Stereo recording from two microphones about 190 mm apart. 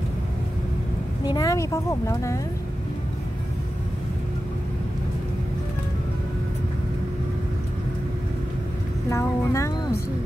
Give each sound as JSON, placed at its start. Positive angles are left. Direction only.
{"t": 1.2, "sound": "speech", "side_deg": 20}
{"t": 9.1, "sound": "music", "side_deg": 15}